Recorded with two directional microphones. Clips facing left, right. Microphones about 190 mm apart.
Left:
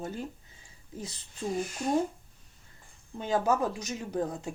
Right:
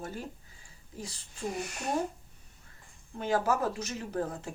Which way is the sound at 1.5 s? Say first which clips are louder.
Left 5 dB; 70° right (ahead or behind).